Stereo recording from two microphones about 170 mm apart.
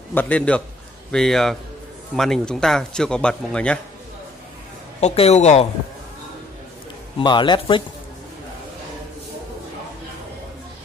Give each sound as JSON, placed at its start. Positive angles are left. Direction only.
{"t": 0.1, "sound": "a man's voice", "side_deg": 10}
{"t": 5.0, "sound": "speech", "side_deg": 40}
{"t": 7.2, "sound": "speech", "side_deg": 25}